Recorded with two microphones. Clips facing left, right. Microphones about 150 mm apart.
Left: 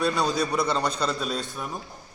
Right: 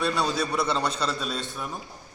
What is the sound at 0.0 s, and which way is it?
A man's voice, 10° left (ahead or behind).